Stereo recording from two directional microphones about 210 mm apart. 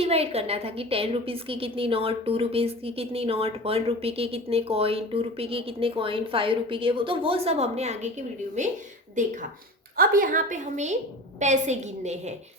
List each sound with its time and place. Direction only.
0.0 s a woman's voice: 30° right (ahead or behind)